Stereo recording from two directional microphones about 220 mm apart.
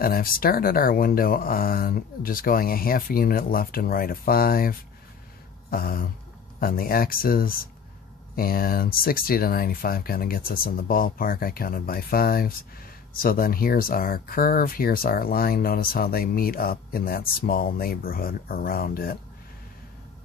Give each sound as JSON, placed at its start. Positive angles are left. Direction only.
{"t": 0.0, "sound": "speech", "side_deg": 40}